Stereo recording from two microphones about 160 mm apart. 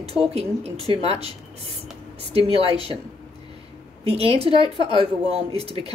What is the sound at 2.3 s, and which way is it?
Speech, 35° right (ahead or behind).